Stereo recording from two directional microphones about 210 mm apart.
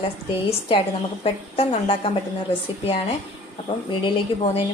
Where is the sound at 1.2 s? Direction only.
25° left (ahead or behind).